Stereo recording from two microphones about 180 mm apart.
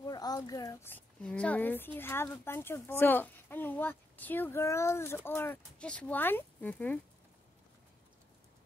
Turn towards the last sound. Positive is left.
turn(degrees=10)  # may be behind; listen again after turning